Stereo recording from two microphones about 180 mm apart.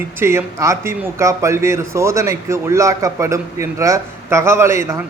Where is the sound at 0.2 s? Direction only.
15° right (ahead or behind).